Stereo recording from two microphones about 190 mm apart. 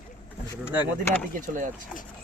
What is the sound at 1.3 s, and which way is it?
Speech, 45° right (ahead or behind).